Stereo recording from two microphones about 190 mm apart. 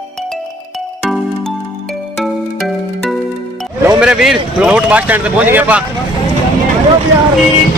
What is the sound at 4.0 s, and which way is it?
Speech, 5° right (ahead or behind).